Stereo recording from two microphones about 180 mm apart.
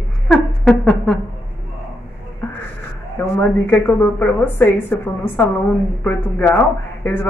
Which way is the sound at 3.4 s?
10° left (ahead or behind).